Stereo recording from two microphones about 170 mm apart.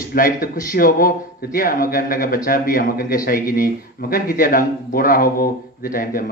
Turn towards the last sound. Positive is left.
turn(degrees=55)  # may be behind; listen again after turning